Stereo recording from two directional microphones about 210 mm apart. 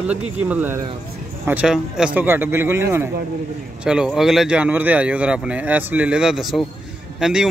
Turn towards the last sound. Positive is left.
turn(degrees=-5)  # may be behind; listen again after turning